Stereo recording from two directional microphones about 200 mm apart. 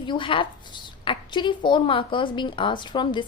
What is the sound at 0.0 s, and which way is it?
A woman's voice, 25° left (ahead or behind).